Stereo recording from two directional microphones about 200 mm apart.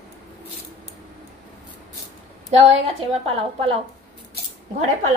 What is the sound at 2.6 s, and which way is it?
A woman's voice, 30° right (ahead or behind).